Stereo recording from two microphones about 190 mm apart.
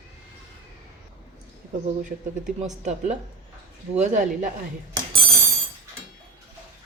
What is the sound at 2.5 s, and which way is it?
Speech, 35° right (ahead or behind).